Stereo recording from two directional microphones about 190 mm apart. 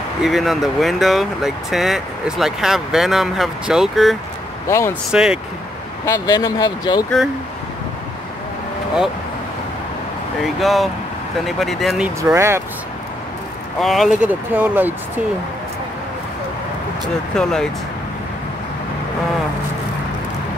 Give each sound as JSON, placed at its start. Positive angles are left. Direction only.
{"t": 0.2, "sound": "speech", "side_deg": 0}
{"t": 4.6, "sound": "speech", "side_deg": 15}
{"t": 5.1, "sound": "speech", "side_deg": -5}
{"t": 6.0, "sound": "speech", "side_deg": 15}
{"t": 10.4, "sound": "speech", "side_deg": 0}
{"t": 12.4, "sound": "speech", "side_deg": -15}
{"t": 13.7, "sound": "speech", "side_deg": 0}
{"t": 17.4, "sound": "speech", "side_deg": 5}